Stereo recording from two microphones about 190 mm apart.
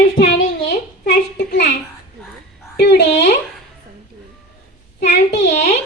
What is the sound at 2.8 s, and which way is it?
Speech, 60° left (ahead or behind).